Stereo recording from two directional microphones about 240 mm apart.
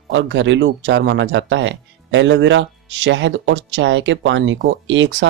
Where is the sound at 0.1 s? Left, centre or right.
Right.